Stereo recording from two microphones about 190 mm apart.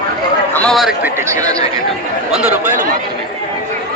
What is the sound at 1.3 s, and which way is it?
Speech, 20° right (ahead or behind).